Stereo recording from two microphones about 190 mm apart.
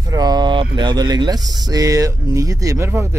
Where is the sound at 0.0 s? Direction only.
20° right (ahead or behind).